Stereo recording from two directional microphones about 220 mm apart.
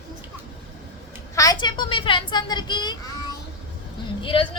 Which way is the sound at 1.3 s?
15° left (ahead or behind).